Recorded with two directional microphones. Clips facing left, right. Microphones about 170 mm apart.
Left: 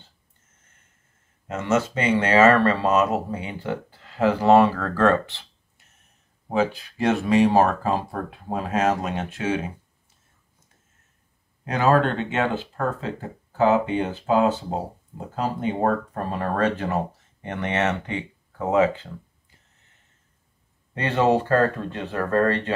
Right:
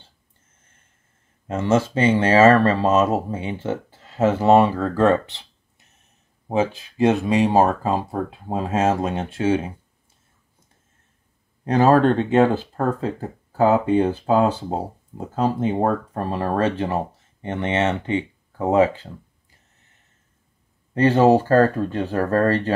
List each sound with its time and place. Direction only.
1.5 s speech: 30° right (ahead or behind)
6.5 s speech: 20° right (ahead or behind)
11.6 s speech: 35° right (ahead or behind)
20.9 s speech: 40° right (ahead or behind)